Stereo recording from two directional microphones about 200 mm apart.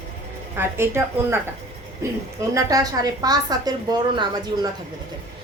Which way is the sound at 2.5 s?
20° right (ahead or behind).